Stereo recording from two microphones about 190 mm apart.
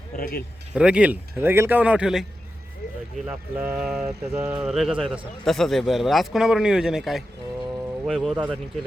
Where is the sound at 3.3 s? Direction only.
10° right (ahead or behind).